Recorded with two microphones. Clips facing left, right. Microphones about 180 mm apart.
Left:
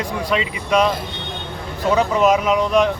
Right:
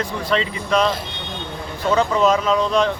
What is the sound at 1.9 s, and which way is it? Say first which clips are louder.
Speech: left 1 dB; 15° left (ahead or behind).